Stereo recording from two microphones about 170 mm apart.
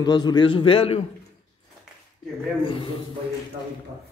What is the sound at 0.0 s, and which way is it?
A man's voice, 25° left (ahead or behind).